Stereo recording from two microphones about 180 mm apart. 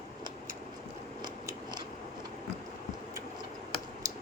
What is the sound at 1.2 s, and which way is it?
Scissors, 25° right (ahead or behind).